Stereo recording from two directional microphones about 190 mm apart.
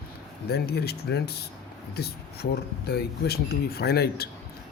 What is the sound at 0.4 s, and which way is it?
Speech, 55° left (ahead or behind).